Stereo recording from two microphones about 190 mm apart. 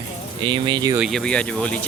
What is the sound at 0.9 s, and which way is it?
Speech, centre (ahead or behind).